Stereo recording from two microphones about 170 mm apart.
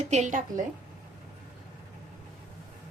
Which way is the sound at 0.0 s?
40° right (ahead or behind).